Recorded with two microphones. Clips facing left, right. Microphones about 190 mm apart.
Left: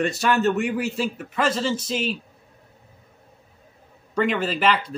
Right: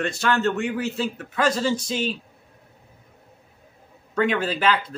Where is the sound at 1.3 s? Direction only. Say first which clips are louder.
Right 1 dB; 5° left (ahead or behind).